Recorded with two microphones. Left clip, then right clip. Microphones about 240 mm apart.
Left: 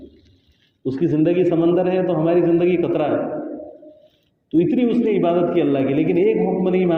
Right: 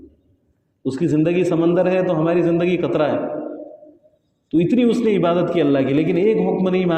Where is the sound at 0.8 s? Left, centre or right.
Right.